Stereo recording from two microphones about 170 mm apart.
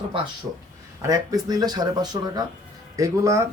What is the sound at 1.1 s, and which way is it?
Speech, 20° right (ahead or behind).